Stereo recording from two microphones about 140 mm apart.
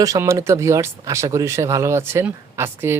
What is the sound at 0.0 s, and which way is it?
Speech, 25° right (ahead or behind).